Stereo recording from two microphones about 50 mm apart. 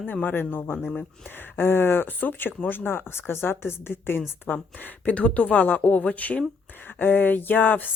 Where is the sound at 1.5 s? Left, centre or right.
Left.